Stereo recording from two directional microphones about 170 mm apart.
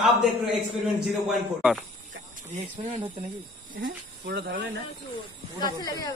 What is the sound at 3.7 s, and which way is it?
Speech, 60° right (ahead or behind).